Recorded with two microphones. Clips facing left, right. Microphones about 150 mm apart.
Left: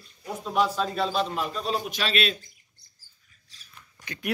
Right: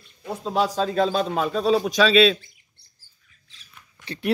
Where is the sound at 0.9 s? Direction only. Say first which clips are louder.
Right 5 dB; 45° right (ahead or behind).